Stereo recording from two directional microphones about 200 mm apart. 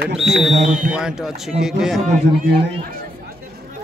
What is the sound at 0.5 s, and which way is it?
Speech, 40° right (ahead or behind).